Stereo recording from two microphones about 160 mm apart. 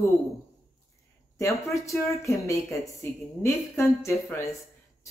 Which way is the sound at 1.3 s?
20° left (ahead or behind).